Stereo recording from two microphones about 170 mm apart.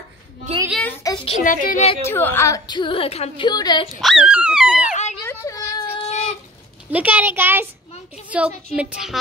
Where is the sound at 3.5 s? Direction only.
25° left (ahead or behind).